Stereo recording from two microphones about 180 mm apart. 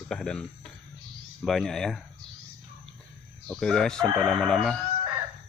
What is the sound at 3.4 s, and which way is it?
Speech, 5° left (ahead or behind).